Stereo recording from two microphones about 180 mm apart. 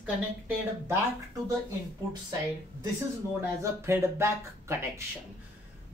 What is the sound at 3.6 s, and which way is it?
Speech, 15° right (ahead or behind).